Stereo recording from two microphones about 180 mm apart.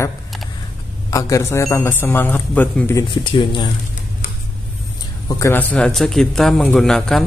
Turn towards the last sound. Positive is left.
turn(degrees=0)  # may be behind; listen again after turning